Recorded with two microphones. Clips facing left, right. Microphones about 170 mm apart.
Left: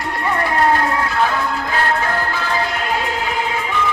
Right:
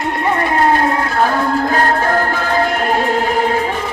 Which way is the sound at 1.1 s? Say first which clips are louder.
Right 4 dB; 45° right (ahead or behind).